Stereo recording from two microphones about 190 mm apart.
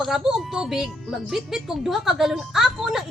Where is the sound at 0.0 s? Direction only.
Centre (ahead or behind).